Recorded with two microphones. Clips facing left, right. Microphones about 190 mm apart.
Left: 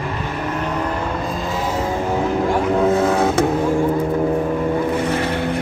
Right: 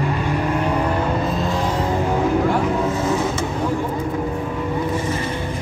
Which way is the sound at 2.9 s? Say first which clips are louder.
Left 4 dB; 60° left (ahead or behind).